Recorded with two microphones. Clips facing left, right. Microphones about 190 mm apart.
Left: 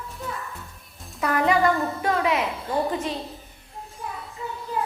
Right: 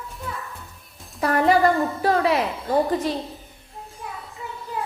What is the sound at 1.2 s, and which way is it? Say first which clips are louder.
A woman's voice: right 3 dB; 35° right (ahead or behind).